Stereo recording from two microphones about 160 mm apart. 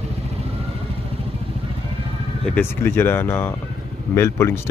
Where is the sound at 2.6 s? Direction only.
15° left (ahead or behind).